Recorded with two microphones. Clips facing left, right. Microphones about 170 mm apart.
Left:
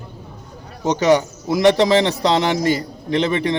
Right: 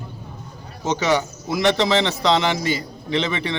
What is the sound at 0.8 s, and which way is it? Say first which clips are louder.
A man's voice: left 5 dB; 15° left (ahead or behind).